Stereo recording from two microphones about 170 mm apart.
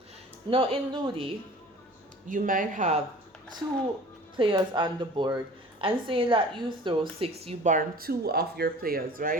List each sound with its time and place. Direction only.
0.5 s a woman's voice: 30° right (ahead or behind)
2.2 s speech: 50° right (ahead or behind)
4.4 s a woman's voice: 30° right (ahead or behind)
7.4 s speech: 45° right (ahead or behind)